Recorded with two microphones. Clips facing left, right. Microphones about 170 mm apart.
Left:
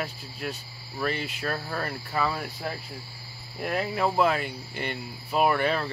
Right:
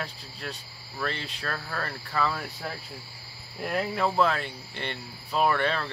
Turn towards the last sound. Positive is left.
turn(degrees=10)  # may be behind; listen again after turning